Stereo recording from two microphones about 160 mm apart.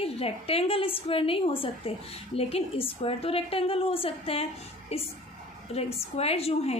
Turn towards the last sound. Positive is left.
turn(degrees=40)  # may be behind; listen again after turning